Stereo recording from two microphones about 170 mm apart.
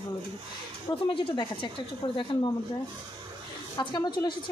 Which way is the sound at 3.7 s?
20° left (ahead or behind).